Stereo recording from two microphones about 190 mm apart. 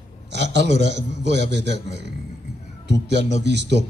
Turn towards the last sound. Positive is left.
turn(degrees=-65)  # may be behind; listen again after turning